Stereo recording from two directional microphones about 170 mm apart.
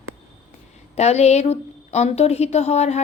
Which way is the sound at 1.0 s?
40° left (ahead or behind).